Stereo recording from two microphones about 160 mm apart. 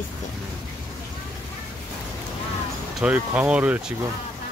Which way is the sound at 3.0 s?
10° right (ahead or behind).